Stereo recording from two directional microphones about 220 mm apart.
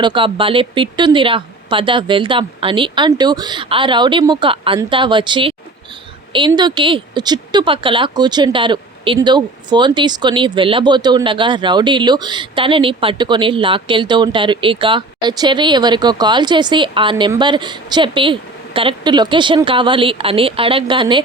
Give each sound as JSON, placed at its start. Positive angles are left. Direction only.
{"t": 0.0, "sound": "speech", "side_deg": -20}